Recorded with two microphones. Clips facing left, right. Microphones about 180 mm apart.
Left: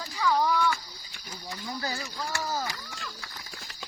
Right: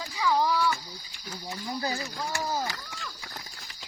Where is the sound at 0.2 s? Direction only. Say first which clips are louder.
Even; centre (ahead or behind).